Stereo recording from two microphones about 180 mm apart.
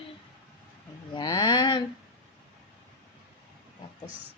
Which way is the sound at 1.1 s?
25° left (ahead or behind).